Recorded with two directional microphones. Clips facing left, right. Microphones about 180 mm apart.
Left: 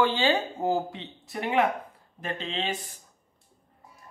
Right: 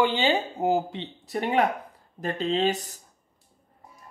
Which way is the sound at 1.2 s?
35° right (ahead or behind).